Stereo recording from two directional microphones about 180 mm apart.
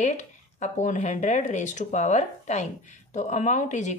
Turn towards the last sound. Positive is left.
turn(degrees=40)  # may be behind; listen again after turning